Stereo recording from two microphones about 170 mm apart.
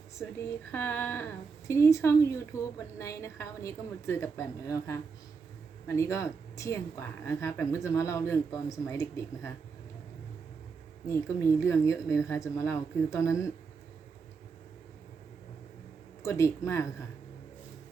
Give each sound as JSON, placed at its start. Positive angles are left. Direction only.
{"t": 0.2, "sound": "a woman's voice", "side_deg": 15}
{"t": 11.1, "sound": "a woman's voice", "side_deg": 15}
{"t": 16.2, "sound": "a woman's voice", "side_deg": 15}